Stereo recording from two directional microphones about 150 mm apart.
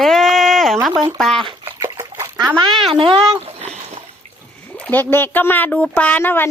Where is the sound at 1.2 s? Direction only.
Centre (ahead or behind).